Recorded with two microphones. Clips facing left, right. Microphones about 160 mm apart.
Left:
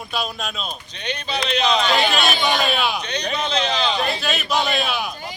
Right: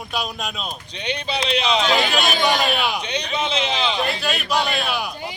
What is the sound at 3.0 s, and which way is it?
Speech, 30° right (ahead or behind).